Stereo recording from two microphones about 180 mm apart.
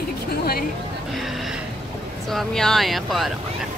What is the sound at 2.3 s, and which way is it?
Speech, centre (ahead or behind).